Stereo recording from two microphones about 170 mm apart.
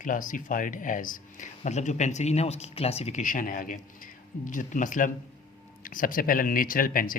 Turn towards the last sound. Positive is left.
turn(degrees=55)  # may be behind; listen again after turning